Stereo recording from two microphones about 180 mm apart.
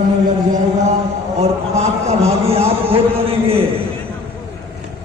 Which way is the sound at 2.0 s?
35° right (ahead or behind).